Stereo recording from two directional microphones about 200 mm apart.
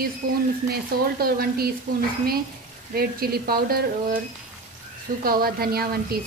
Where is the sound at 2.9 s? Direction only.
50° right (ahead or behind).